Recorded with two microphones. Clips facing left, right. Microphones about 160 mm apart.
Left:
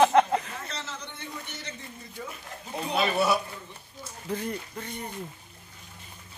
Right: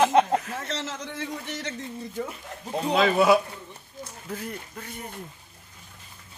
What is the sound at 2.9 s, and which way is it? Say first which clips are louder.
Speech: right 5 dB; 90° right.